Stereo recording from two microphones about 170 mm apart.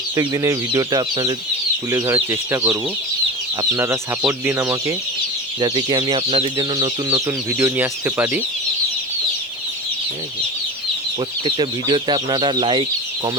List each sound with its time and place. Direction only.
0.2 s speech: 20° right (ahead or behind)
5.5 s speech: 25° right (ahead or behind)
7.3 s speech: 15° right (ahead or behind)
11.4 s speech: 30° right (ahead or behind)